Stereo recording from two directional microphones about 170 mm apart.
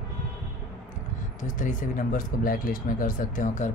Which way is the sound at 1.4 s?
50° left (ahead or behind).